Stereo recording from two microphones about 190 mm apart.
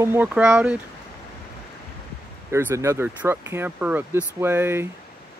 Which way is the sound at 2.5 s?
15° right (ahead or behind).